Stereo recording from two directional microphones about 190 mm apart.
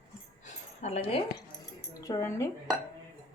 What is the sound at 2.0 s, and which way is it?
Speech, 15° left (ahead or behind).